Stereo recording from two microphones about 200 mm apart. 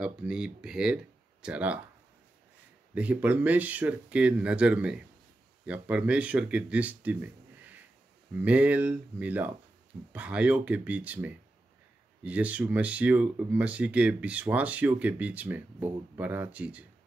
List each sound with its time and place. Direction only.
0.0 s speech: 5° right (ahead or behind)
2.9 s speech: 5° right (ahead or behind)